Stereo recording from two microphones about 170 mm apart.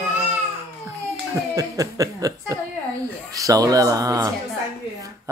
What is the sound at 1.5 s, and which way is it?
Speech, 20° right (ahead or behind).